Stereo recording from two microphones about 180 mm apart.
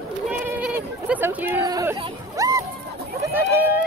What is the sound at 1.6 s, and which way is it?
Speech, 20° right (ahead or behind).